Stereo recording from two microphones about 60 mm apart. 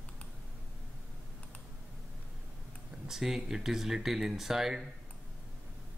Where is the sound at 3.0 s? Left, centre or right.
Centre.